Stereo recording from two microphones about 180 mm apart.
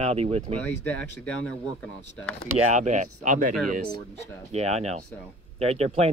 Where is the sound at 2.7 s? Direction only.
40° right (ahead or behind).